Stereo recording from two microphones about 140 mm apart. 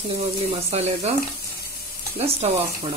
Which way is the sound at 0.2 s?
45° right (ahead or behind).